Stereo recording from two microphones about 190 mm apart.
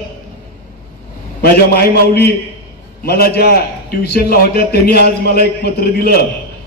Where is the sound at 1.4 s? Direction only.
55° left (ahead or behind).